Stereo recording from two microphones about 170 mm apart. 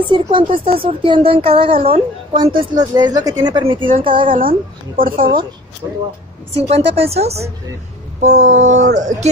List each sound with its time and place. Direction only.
0.1 s a woman's voice: 30° right (ahead or behind)
4.4 s speech: 55° right (ahead or behind)
6.5 s a woman's voice: 35° right (ahead or behind)